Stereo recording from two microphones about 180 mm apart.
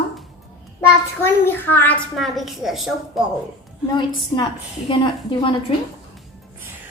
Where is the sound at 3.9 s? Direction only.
25° left (ahead or behind).